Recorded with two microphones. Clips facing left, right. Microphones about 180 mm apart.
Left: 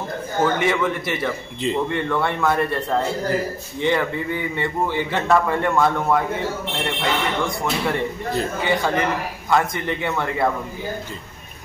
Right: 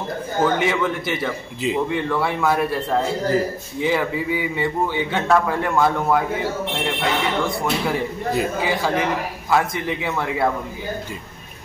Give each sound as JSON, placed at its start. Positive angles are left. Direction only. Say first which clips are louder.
{"t": 0.4, "sound": "a man's voice", "louder": "even", "side_deg": 0}